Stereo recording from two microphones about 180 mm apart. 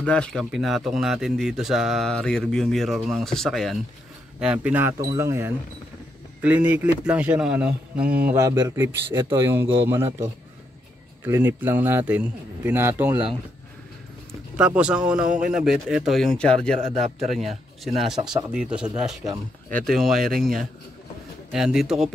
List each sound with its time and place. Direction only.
0.0 s a man's voice: 5° left (ahead or behind)
8.3 s speech: 15° right (ahead or behind)
11.2 s speech: 15° right (ahead or behind)
14.6 s a man's voice: 5° right (ahead or behind)